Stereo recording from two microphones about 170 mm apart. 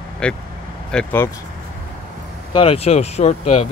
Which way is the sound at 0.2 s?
5° left (ahead or behind).